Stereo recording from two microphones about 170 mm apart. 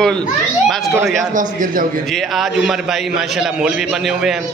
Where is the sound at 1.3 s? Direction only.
50° right (ahead or behind).